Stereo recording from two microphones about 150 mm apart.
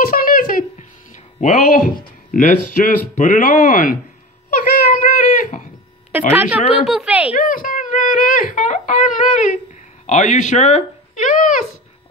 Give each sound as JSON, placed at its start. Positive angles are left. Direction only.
{"t": 0.1, "sound": "hum", "side_deg": 65}
{"t": 2.3, "sound": "speech", "side_deg": 65}
{"t": 4.5, "sound": "a sound", "side_deg": 65}
{"t": 6.3, "sound": "a woman's voice", "side_deg": -10}
{"t": 7.3, "sound": "speech", "side_deg": 65}